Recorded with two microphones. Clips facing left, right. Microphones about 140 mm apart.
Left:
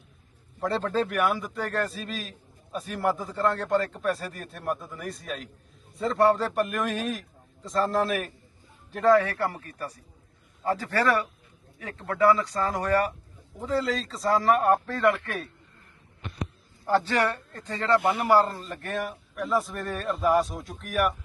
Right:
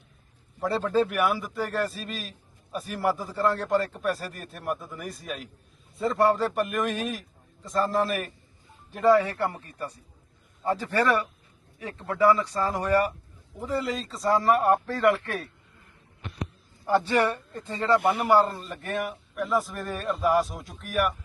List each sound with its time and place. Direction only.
0.6 s a man's voice: 5° right (ahead or behind)
9.1 s a man's voice: 15° right (ahead or behind)
16.8 s a man's voice: 5° right (ahead or behind)